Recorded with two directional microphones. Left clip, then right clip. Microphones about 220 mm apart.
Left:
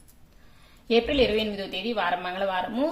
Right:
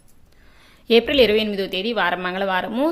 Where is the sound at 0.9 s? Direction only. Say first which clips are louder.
Right 7 dB; 35° right (ahead or behind).